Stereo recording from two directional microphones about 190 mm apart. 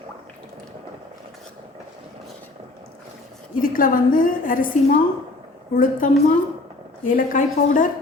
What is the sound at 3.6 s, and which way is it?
A woman's voice, 45° left (ahead or behind).